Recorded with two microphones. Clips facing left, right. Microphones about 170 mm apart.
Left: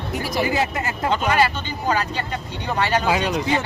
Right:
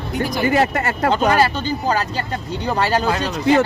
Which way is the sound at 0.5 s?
65° right (ahead or behind).